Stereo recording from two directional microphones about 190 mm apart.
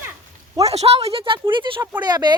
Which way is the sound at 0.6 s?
35° right (ahead or behind).